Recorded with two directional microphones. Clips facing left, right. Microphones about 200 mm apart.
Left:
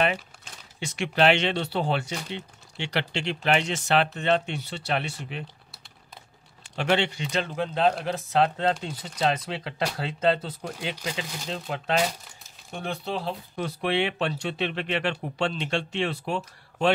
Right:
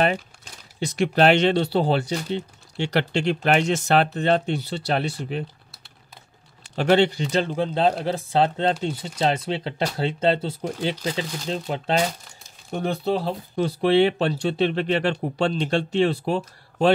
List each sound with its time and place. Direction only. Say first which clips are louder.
0.7 s speech: right 5 dB; 40° right (ahead or behind)
6.7 s speech: right 7 dB; 40° right (ahead or behind)